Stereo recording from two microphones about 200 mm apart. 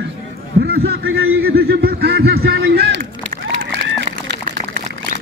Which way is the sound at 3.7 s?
60° right (ahead or behind).